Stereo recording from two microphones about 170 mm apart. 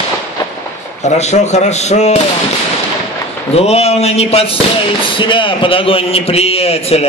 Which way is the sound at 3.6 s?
40° left (ahead or behind).